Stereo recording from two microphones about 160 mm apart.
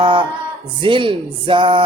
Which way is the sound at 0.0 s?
30° right (ahead or behind).